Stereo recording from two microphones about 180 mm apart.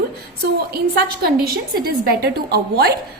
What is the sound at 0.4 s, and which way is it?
A woman's voice, 60° right (ahead or behind).